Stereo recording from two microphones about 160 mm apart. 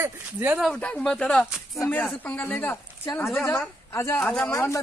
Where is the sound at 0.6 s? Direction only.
5° left (ahead or behind).